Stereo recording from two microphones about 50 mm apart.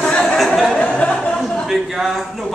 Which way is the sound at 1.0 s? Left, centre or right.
Left.